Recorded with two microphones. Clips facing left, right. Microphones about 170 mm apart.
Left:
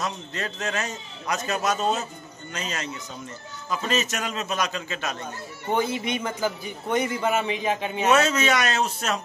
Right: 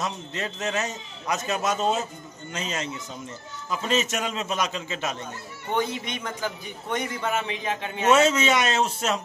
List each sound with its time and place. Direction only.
0.0 s a man's voice: 20° right (ahead or behind)
5.7 s a man's voice: 5° left (ahead or behind)
8.1 s a man's voice: 25° right (ahead or behind)